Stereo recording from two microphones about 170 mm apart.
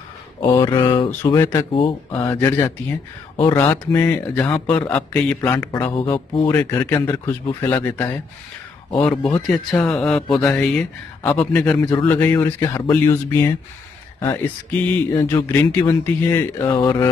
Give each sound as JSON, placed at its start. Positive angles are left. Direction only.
{"t": 0.4, "sound": "speech", "side_deg": 20}
{"t": 1.2, "sound": "speech", "side_deg": 15}
{"t": 2.1, "sound": "speech", "side_deg": 15}
{"t": 6.3, "sound": "speech", "side_deg": 20}